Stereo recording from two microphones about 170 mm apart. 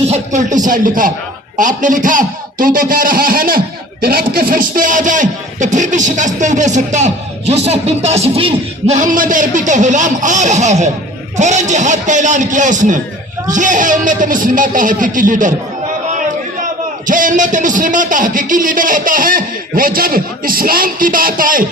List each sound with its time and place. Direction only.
0.1 s speech: 45° right (ahead or behind)
9.0 s speech: 55° right (ahead or behind)
17.1 s speech: 50° right (ahead or behind)